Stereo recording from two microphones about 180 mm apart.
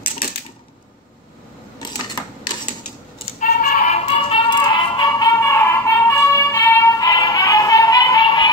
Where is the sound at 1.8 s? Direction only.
25° left (ahead or behind).